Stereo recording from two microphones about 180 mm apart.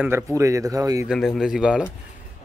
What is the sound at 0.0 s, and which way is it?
Speech, 15° right (ahead or behind).